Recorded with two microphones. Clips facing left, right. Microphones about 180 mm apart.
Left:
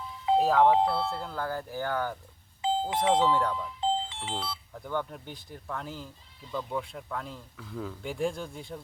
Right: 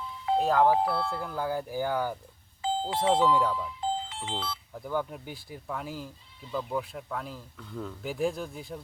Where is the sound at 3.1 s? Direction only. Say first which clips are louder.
Right 1 dB; 20° left (ahead or behind).